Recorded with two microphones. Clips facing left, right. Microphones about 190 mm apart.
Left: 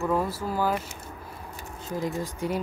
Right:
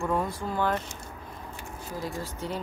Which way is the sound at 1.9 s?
20° left (ahead or behind).